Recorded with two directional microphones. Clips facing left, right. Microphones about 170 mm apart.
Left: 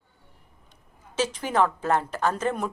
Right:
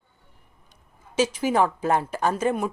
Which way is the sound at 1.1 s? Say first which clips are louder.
Right 3 dB; 10° right (ahead or behind).